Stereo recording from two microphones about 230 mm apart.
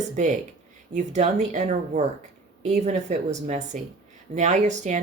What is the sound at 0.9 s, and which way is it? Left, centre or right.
A woman's voice, right.